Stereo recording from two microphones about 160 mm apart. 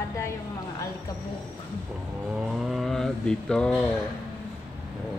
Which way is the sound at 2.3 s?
5° right (ahead or behind).